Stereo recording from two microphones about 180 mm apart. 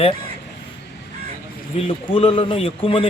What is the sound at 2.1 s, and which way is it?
Speech, 30° left (ahead or behind).